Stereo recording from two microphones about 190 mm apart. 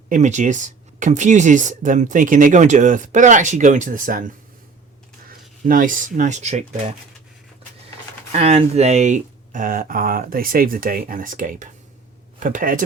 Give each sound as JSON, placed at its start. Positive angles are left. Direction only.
{"t": 0.1, "sound": "speech", "side_deg": -40}
{"t": 5.6, "sound": "speech", "side_deg": -45}
{"t": 8.3, "sound": "speech", "side_deg": -35}